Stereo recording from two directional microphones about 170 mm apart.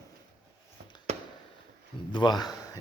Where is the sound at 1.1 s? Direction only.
40° right (ahead or behind).